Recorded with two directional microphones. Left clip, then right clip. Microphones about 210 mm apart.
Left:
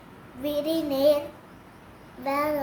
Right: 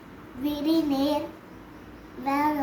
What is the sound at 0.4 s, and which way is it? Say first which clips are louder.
Speech: right 1 dB; 20° left (ahead or behind).